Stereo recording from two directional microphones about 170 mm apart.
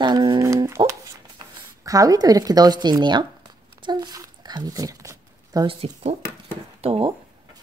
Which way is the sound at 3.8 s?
25° right (ahead or behind).